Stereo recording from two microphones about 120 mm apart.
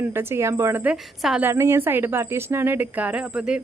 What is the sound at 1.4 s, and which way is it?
Speech, 20° right (ahead or behind).